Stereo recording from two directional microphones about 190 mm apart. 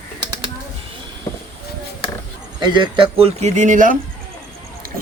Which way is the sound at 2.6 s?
25° right (ahead or behind).